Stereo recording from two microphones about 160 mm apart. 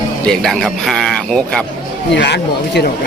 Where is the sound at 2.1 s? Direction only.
90° left.